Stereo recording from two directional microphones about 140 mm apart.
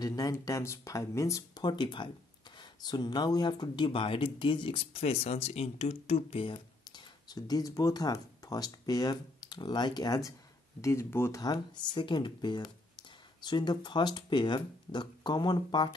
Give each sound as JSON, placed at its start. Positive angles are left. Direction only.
{"t": 0.0, "sound": "speech", "side_deg": 25}
{"t": 7.2, "sound": "speech", "side_deg": 30}
{"t": 11.4, "sound": "speech", "side_deg": 30}